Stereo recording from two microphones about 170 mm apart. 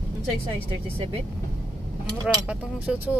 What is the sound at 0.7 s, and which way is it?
Speech, 30° right (ahead or behind).